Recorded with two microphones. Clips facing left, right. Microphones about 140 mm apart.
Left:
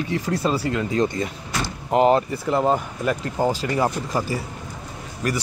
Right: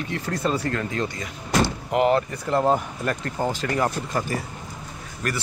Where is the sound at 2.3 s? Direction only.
5° left (ahead or behind).